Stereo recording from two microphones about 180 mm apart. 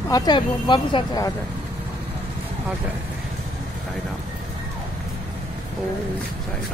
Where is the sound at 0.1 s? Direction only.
20° left (ahead or behind).